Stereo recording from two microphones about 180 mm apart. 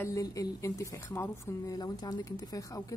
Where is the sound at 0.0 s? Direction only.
20° left (ahead or behind).